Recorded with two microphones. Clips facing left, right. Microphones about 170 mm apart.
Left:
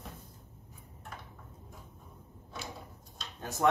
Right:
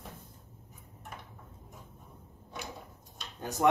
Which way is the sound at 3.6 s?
15° right (ahead or behind).